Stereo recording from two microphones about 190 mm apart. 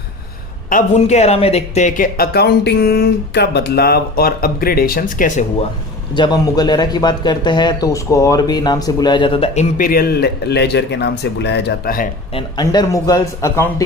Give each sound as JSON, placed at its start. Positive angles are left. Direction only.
{"t": 0.7, "sound": "speech", "side_deg": 40}
{"t": 6.1, "sound": "speech", "side_deg": 25}
{"t": 9.7, "sound": "speech", "side_deg": 50}
{"t": 12.3, "sound": "speech", "side_deg": 25}